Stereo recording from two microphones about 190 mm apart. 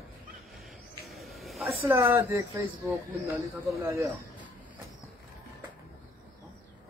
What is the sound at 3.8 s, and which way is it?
Speech, 15° right (ahead or behind).